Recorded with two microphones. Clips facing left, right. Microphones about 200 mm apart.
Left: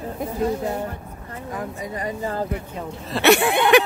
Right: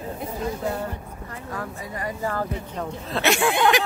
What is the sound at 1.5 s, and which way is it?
Speech, 20° left (ahead or behind).